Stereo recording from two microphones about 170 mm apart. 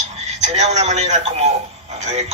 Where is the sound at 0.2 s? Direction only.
40° right (ahead or behind).